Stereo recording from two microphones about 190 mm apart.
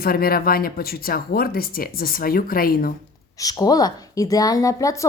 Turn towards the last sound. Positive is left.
turn(degrees=15)  # may be behind; listen again after turning